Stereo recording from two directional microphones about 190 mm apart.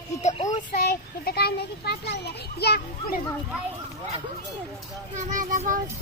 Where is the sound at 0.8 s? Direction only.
55° left (ahead or behind).